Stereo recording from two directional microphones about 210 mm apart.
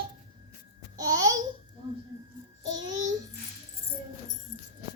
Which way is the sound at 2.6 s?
15° right (ahead or behind).